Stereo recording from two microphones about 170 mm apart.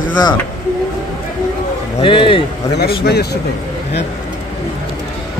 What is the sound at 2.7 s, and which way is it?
Speech, 70° left (ahead or behind).